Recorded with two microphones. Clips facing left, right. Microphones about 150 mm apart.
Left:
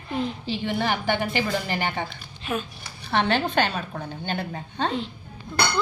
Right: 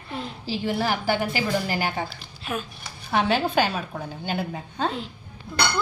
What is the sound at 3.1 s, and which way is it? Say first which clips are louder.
A woman's voice: right 1 dB; 5° right (ahead or behind).